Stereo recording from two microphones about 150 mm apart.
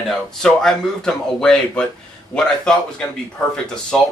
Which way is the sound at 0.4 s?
5° left (ahead or behind).